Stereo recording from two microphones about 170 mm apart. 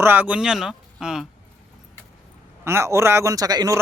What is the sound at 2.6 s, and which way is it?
Speech, 15° right (ahead or behind).